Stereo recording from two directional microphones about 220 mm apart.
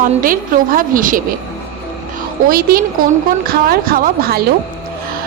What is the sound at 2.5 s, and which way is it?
A woman's voice, 40° right (ahead or behind).